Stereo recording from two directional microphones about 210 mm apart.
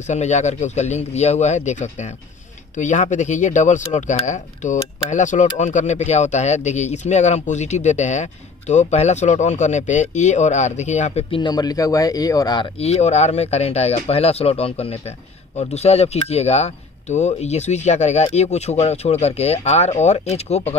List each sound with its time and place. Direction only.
0.0 s speech: 35° left (ahead or behind)